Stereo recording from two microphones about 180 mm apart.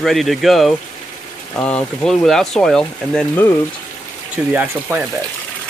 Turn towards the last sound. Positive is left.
turn(degrees=-10)  # may be behind; listen again after turning